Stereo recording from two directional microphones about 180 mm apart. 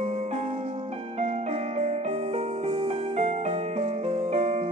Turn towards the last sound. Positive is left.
turn(degrees=-35)  # may be behind; listen again after turning